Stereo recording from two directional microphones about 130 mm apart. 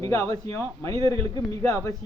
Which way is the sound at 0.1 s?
25° left (ahead or behind).